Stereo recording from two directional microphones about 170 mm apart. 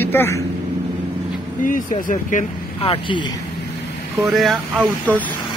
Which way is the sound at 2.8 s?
35° left (ahead or behind).